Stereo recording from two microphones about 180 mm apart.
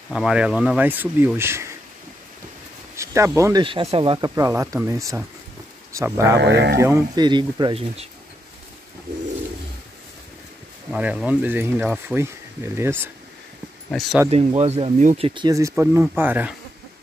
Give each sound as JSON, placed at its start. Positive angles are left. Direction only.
{"t": 0.1, "sound": "speech", "side_deg": -5}
{"t": 3.0, "sound": "speech", "side_deg": -15}
{"t": 3.6, "sound": "speech", "side_deg": -30}
{"t": 4.4, "sound": "speech", "side_deg": -15}
{"t": 6.3, "sound": "speech", "side_deg": -70}
{"t": 6.8, "sound": "speech", "side_deg": -15}
{"t": 10.9, "sound": "speech", "side_deg": -5}
{"t": 13.8, "sound": "speech", "side_deg": 0}
{"t": 14.3, "sound": "speech", "side_deg": -35}
{"t": 15.2, "sound": "speech", "side_deg": -25}
{"t": 15.7, "sound": "speech", "side_deg": -10}